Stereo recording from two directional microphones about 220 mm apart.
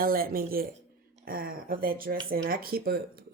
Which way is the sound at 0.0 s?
40° right (ahead or behind).